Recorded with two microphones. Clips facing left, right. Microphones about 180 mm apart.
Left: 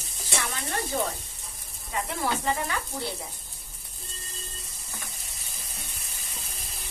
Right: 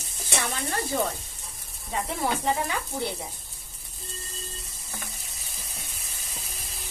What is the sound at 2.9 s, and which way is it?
Stir, 5° right (ahead or behind).